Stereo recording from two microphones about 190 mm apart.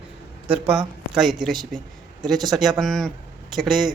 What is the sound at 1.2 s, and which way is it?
A man's voice, centre (ahead or behind).